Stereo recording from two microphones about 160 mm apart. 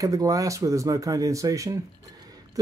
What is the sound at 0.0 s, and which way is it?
Speech, 20° right (ahead or behind).